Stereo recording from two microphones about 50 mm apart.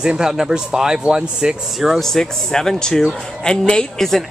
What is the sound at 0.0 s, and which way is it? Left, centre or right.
Speech, centre.